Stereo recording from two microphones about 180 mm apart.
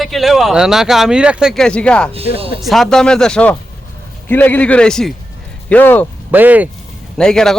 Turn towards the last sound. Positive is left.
turn(degrees=5)  # may be behind; listen again after turning